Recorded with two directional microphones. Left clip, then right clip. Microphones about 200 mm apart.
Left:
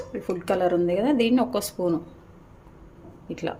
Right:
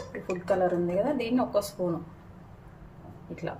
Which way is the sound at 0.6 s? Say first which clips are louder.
Left 6 dB; 50° left (ahead or behind).